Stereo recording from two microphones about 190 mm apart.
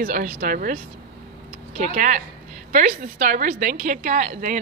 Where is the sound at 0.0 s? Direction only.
45° right (ahead or behind).